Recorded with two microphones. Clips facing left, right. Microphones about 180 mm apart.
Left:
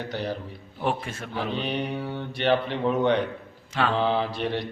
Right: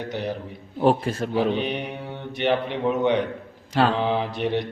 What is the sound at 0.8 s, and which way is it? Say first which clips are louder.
Speech: right 8 dB; 35° right (ahead or behind).